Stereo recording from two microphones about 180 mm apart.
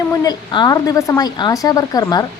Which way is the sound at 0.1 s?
20° left (ahead or behind).